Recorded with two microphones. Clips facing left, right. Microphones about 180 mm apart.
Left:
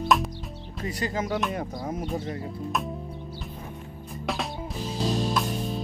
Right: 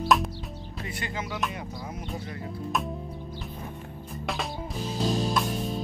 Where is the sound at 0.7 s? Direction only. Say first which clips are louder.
Left 6 dB; 40° left (ahead or behind).